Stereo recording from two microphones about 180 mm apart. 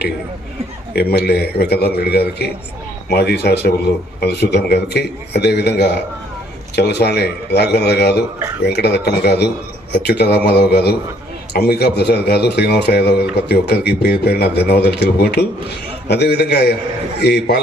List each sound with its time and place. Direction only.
0.9 s a man's voice: 60° left (ahead or behind)